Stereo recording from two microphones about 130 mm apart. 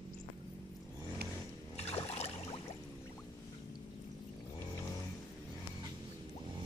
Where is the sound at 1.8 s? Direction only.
50° left (ahead or behind).